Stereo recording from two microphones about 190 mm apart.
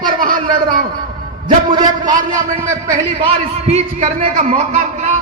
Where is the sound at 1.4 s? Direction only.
25° right (ahead or behind).